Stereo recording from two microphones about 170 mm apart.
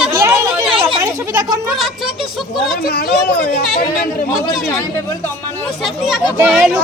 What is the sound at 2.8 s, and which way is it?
Speech, 65° left (ahead or behind).